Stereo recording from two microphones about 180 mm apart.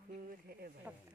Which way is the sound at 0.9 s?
5° right (ahead or behind).